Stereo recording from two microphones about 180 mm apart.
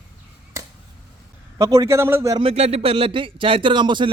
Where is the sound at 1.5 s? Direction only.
20° right (ahead or behind).